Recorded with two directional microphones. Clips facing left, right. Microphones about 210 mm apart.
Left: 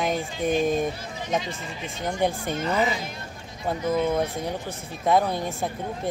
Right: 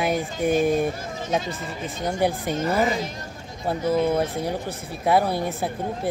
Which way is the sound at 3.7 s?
10° right (ahead or behind).